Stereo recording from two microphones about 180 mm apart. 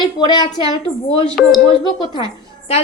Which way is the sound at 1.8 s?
25° left (ahead or behind).